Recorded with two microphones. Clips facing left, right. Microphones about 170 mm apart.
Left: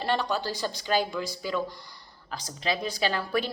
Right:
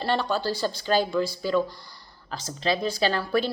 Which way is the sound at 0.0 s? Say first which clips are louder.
Right 2 dB; 15° left (ahead or behind).